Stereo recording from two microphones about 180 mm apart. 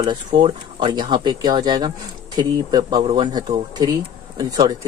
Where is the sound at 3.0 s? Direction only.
35° right (ahead or behind).